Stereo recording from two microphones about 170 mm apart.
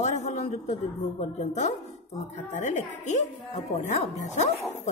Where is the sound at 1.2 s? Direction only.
45° left (ahead or behind).